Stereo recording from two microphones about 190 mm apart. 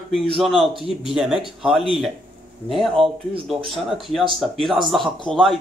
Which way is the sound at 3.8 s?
Centre (ahead or behind).